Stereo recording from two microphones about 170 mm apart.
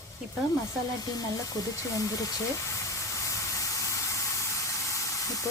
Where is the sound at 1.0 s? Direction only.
20° left (ahead or behind).